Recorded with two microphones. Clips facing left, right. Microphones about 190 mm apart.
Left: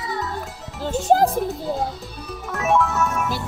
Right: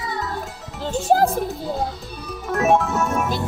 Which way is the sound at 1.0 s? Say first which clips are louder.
Even; 15° left (ahead or behind).